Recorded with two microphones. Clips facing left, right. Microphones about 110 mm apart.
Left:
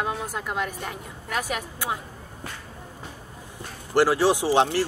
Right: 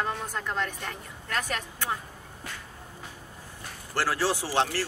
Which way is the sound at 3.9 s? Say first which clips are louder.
Left 8 dB; 15° left (ahead or behind).